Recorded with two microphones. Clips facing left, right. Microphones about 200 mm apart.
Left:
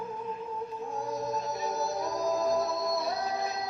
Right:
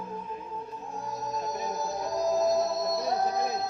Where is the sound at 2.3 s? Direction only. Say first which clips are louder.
Right 3 dB; 40° right (ahead or behind).